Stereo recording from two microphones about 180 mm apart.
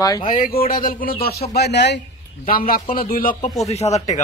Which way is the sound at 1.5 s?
65° left (ahead or behind).